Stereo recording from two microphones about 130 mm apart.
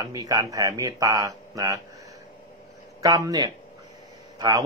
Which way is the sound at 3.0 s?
25° right (ahead or behind).